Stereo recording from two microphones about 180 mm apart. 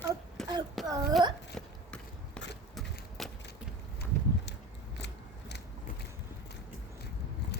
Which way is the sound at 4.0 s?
70° left (ahead or behind).